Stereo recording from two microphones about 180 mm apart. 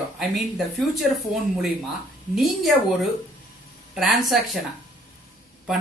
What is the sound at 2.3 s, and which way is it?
Speech, centre (ahead or behind).